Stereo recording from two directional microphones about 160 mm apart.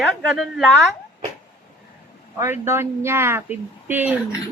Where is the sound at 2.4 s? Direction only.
15° right (ahead or behind).